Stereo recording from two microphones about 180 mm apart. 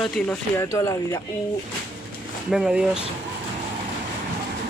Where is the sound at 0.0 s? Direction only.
5° left (ahead or behind).